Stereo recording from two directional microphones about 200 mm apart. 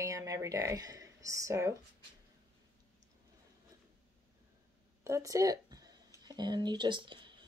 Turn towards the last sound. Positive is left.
turn(degrees=-25)  # may be behind; listen again after turning